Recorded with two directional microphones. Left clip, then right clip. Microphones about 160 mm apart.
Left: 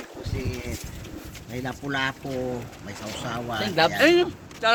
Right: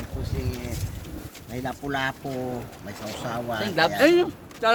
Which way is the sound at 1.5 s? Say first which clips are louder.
Even; 45° right (ahead or behind).